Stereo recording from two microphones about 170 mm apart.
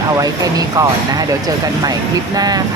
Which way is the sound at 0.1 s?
20° right (ahead or behind).